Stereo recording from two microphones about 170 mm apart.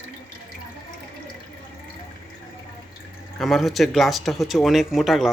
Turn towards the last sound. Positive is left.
turn(degrees=0)  # may be behind; listen again after turning